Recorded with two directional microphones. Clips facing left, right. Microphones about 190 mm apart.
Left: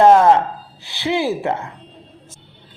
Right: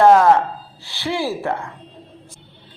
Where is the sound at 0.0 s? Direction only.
20° left (ahead or behind).